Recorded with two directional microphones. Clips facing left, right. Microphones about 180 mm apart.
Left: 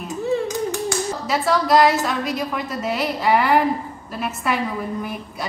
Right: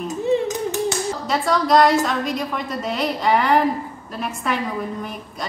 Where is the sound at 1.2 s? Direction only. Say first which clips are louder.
Even; 5° left (ahead or behind).